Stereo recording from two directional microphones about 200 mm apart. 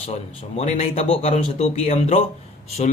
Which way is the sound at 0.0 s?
30° left (ahead or behind).